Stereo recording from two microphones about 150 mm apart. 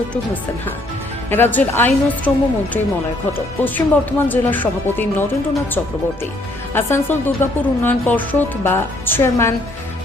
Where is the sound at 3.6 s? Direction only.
10° left (ahead or behind).